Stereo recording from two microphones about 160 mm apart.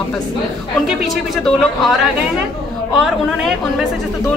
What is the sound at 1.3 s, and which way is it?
Speech, centre (ahead or behind).